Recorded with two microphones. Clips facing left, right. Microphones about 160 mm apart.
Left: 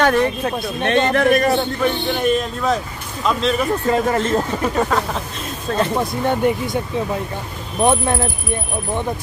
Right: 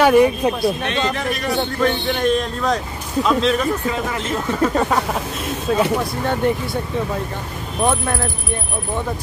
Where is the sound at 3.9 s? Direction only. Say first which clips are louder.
Left 5 dB; 45° left (ahead or behind).